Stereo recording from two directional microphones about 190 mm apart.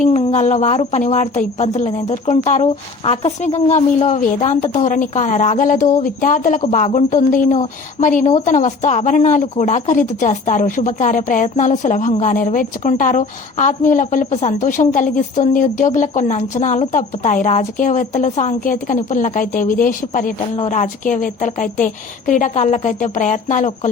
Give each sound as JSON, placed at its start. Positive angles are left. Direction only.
{"t": 0.0, "sound": "a woman's voice", "side_deg": 35}